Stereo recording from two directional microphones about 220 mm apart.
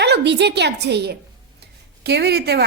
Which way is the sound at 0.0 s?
50° right (ahead or behind).